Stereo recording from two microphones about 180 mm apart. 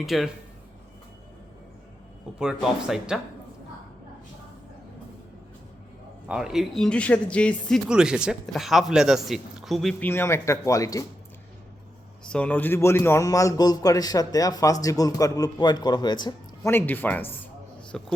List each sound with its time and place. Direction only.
0.0 s speech: centre (ahead or behind)
2.4 s speech: 5° right (ahead or behind)
6.2 s speech: 5° right (ahead or behind)
7.9 s speech: 5° right (ahead or behind); by 11.0 s 20° left (ahead or behind)
12.3 s a man's voice: 10° left (ahead or behind)
16.7 s speech: 10° left (ahead or behind)